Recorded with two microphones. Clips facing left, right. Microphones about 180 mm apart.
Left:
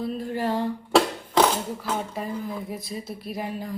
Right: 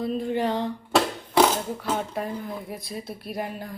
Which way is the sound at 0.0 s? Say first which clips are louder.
Right 2 dB; centre (ahead or behind).